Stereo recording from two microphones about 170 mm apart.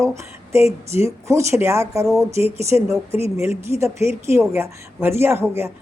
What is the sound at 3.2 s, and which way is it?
A woman's voice, 15° right (ahead or behind).